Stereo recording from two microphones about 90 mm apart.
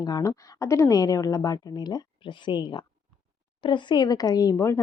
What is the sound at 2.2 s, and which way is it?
A woman's voice, 65° left (ahead or behind).